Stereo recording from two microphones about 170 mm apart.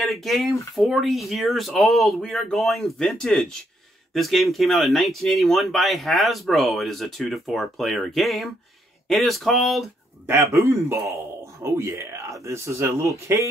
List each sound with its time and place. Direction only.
0.0 s speech: centre (ahead or behind)
10.2 s speech: 15° right (ahead or behind)